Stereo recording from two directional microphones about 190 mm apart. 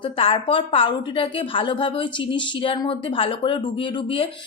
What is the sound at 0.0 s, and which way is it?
A woman's voice, 30° left (ahead or behind).